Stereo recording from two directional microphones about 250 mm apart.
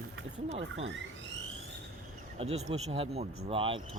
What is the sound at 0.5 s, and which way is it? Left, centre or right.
Speech, right.